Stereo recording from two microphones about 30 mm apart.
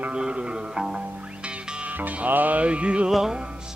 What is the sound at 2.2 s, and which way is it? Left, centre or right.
Music, right.